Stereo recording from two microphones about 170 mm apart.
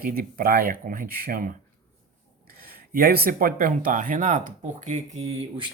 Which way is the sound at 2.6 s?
60° right (ahead or behind).